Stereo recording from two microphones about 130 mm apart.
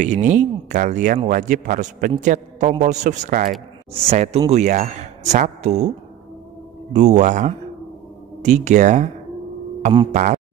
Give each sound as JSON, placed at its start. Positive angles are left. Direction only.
{"t": 0.0, "sound": "a man's voice", "side_deg": -70}
{"t": 2.2, "sound": "a man's voice", "side_deg": -70}
{"t": 3.9, "sound": "speech", "side_deg": -55}
{"t": 4.5, "sound": "a man's voice", "side_deg": -70}
{"t": 10.1, "sound": "speech", "side_deg": -80}